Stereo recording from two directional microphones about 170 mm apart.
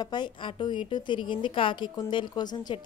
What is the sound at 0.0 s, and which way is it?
A woman's voice, 25° left (ahead or behind).